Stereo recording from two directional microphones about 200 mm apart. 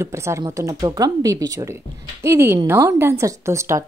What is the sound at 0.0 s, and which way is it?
Speech, 15° right (ahead or behind).